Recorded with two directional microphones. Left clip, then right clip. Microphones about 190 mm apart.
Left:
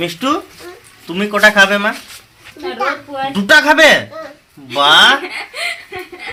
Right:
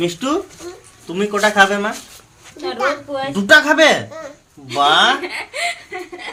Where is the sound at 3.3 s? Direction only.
20° left (ahead or behind).